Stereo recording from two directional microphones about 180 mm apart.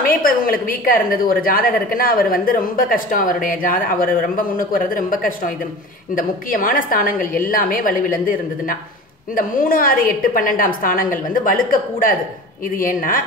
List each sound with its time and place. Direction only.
0.0 s a woman's voice: 50° left (ahead or behind)